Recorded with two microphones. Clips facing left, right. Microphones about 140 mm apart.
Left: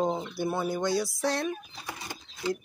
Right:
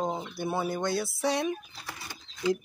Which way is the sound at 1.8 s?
20° left (ahead or behind).